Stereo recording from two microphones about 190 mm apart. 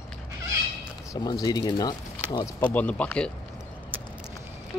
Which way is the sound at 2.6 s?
10° left (ahead or behind).